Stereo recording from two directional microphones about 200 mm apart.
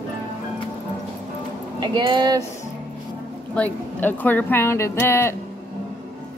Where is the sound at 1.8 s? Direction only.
20° right (ahead or behind).